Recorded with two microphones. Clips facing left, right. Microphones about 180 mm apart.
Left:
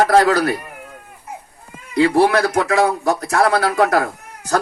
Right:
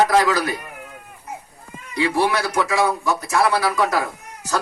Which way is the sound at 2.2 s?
60° left (ahead or behind).